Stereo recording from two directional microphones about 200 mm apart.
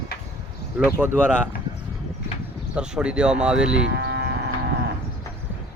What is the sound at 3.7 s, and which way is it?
Speech, 55° right (ahead or behind).